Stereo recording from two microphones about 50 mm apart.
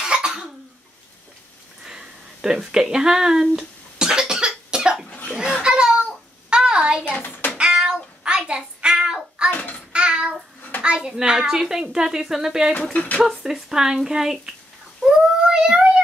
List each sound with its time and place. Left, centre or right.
0.0 s cough: centre
1.9 s a sound: centre
7.2 s child singing: left
7.5 s child singing: centre
9.5 s a child's voice: left
9.9 s child singing: centre
10.8 s speech: centre
12.9 s speech: left
13.2 s speech: centre
15.0 s child singing: centre